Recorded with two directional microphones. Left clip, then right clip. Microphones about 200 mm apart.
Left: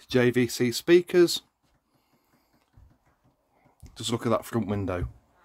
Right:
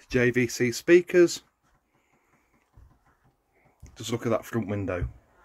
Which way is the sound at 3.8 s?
35° left (ahead or behind).